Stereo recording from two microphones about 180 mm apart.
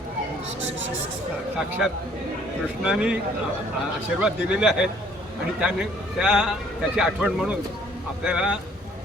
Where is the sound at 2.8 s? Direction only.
5° right (ahead or behind).